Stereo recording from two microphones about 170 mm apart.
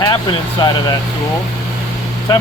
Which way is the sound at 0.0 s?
25° left (ahead or behind).